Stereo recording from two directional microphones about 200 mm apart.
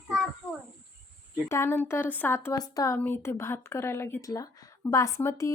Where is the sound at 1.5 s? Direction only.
15° left (ahead or behind).